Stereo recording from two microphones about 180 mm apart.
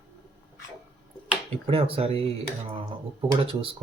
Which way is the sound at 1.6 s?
30° right (ahead or behind).